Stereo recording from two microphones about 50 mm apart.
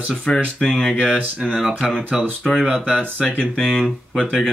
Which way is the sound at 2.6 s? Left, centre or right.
Centre.